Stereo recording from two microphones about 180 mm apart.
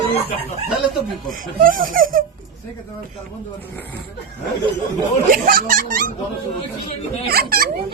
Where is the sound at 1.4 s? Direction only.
50° right (ahead or behind).